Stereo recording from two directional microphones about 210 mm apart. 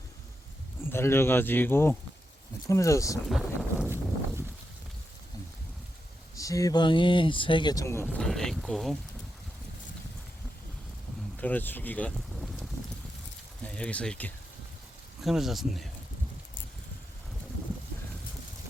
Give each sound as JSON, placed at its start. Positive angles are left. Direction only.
{"t": 0.9, "sound": "speech", "side_deg": 10}
{"t": 3.2, "sound": "boat", "side_deg": 0}
{"t": 3.8, "sound": "a sound", "side_deg": -10}
{"t": 6.3, "sound": "speech", "side_deg": 15}
{"t": 8.1, "sound": "speech", "side_deg": 5}
{"t": 11.3, "sound": "speech", "side_deg": 10}